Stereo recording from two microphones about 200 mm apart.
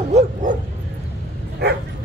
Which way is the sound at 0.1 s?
40° right (ahead or behind).